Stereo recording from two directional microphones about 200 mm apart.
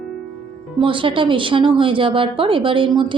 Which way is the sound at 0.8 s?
25° right (ahead or behind).